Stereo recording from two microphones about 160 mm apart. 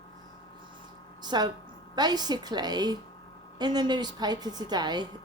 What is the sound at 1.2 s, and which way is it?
A woman's voice, 25° right (ahead or behind).